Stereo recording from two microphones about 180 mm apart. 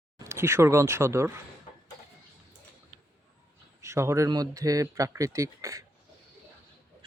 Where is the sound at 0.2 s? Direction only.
15° right (ahead or behind).